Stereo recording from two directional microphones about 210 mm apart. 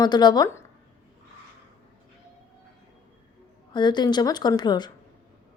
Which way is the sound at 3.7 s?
20° left (ahead or behind).